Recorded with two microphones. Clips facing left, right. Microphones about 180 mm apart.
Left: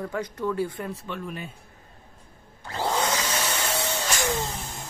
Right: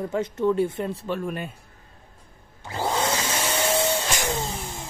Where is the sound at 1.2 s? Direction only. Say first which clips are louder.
Right 5 dB; 55° right (ahead or behind).